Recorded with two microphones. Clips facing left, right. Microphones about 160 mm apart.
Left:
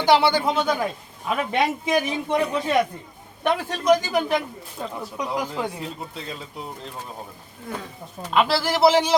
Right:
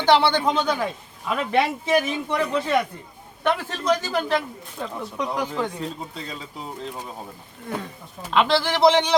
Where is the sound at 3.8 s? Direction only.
15° left (ahead or behind).